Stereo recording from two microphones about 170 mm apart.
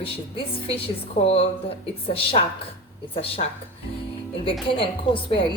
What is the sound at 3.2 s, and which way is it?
Speech, 35° left (ahead or behind).